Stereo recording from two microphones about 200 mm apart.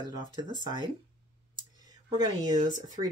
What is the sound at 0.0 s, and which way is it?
Speech, 20° right (ahead or behind).